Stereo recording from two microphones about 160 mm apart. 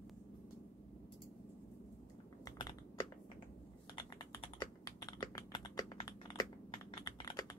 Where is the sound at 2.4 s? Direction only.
30° left (ahead or behind).